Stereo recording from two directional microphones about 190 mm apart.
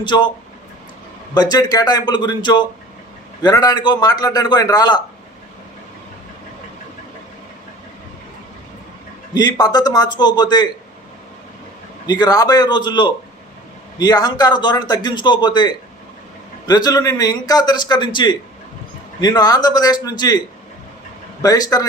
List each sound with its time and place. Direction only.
0.0 s a man's voice: 25° left (ahead or behind)
1.3 s a man's voice: 20° left (ahead or behind)
9.3 s a man's voice: 20° left (ahead or behind)
12.0 s a man's voice: 20° left (ahead or behind)
21.4 s a man's voice: 20° left (ahead or behind)